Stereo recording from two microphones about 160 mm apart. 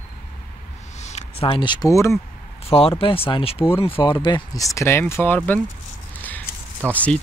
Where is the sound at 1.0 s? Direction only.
45° left (ahead or behind); by 2.2 s 20° left (ahead or behind).